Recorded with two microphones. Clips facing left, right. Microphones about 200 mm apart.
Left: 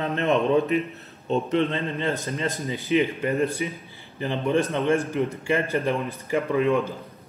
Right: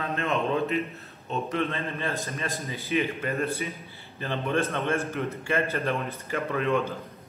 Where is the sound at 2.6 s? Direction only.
15° left (ahead or behind).